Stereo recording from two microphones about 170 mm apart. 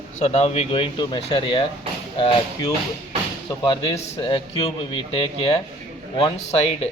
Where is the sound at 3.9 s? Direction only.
30° left (ahead or behind).